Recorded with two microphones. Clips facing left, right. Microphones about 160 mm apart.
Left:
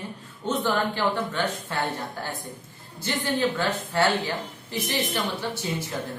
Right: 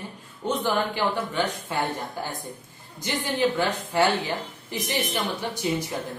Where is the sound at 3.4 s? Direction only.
15° right (ahead or behind).